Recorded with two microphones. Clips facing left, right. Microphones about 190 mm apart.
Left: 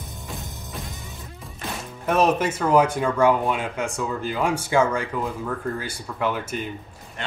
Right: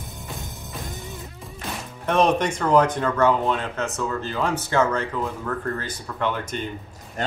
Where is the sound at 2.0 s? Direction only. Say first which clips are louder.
Even; 5° left (ahead or behind).